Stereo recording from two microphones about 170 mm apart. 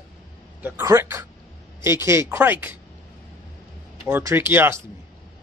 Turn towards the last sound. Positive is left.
turn(degrees=-15)  # may be behind; listen again after turning